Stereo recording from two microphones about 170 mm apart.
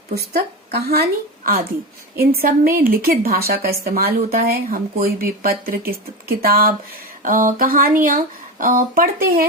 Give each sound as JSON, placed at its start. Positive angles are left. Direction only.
{"t": 0.1, "sound": "speech", "side_deg": -65}
{"t": 2.1, "sound": "a woman's voice", "side_deg": -60}